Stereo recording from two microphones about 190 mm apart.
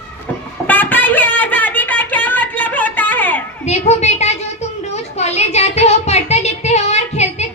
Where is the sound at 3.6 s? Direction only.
35° left (ahead or behind).